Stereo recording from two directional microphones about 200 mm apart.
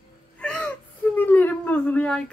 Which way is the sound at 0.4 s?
5° left (ahead or behind).